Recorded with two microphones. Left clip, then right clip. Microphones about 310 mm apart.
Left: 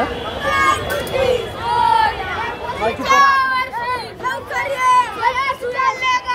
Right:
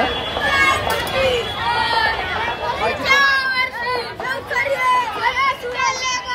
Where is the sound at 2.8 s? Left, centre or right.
Left.